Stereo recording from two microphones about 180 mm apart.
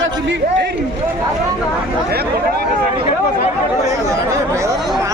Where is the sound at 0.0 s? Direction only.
80° right.